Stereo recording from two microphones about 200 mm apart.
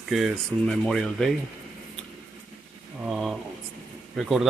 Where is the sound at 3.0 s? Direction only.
5° right (ahead or behind).